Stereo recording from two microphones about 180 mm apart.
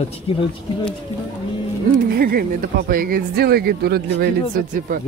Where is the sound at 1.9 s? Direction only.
55° right (ahead or behind).